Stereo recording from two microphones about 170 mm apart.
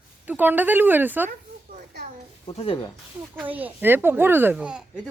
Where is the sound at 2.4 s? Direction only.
30° left (ahead or behind).